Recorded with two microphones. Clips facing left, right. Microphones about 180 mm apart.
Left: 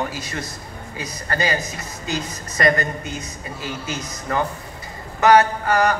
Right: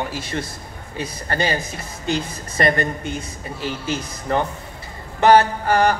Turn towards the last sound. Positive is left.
turn(degrees=-30)  # may be behind; listen again after turning